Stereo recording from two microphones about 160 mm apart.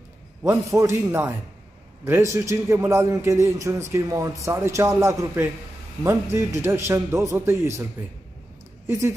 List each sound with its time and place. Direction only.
0.4 s a man's voice: 20° right (ahead or behind)
8.8 s speech: 20° right (ahead or behind)